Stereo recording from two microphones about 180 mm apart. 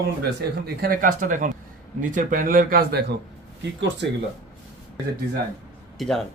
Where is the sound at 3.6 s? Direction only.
75° right (ahead or behind).